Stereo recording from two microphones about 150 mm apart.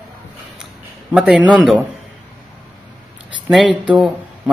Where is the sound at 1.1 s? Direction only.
10° right (ahead or behind).